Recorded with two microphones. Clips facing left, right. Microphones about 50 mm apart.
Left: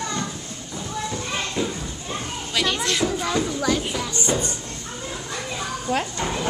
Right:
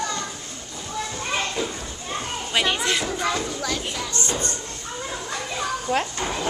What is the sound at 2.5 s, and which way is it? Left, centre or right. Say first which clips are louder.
Children playing: right 1 dB; centre.